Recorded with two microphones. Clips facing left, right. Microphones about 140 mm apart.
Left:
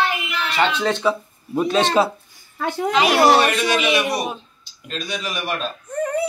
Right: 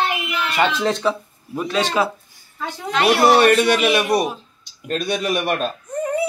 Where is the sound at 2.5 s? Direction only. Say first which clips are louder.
Left 6 dB; 55° left (ahead or behind).